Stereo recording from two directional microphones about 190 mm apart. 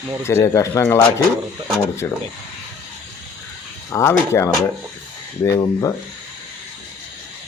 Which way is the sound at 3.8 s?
15° left (ahead or behind).